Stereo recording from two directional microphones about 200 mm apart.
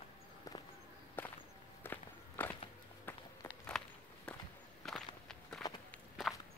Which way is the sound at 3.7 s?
Centre (ahead or behind).